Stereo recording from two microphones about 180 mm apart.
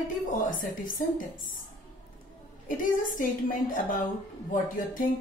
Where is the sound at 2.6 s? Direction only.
50° left (ahead or behind).